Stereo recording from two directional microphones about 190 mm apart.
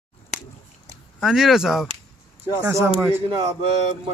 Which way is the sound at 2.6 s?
15° right (ahead or behind).